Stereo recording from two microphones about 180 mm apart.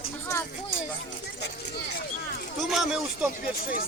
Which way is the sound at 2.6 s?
Centre (ahead or behind).